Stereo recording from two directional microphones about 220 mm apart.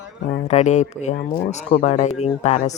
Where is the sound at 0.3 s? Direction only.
30° left (ahead or behind).